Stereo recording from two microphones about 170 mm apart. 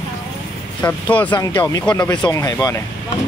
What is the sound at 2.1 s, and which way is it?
Speech, 20° left (ahead or behind).